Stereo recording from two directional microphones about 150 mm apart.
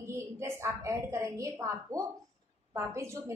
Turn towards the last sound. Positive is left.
turn(degrees=-20)  # may be behind; listen again after turning